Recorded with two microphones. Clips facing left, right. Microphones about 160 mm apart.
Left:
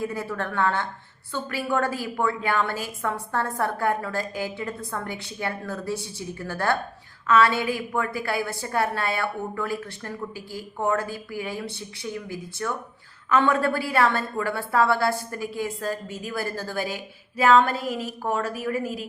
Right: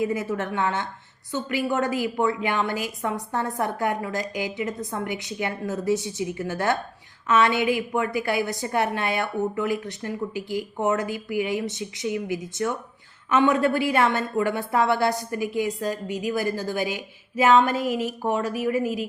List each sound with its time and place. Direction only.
0.0 s a woman's voice: 20° right (ahead or behind)
17.7 s a woman's voice: 40° left (ahead or behind)
18.2 s a woman's voice: 20° right (ahead or behind)
18.7 s a woman's voice: 40° left (ahead or behind)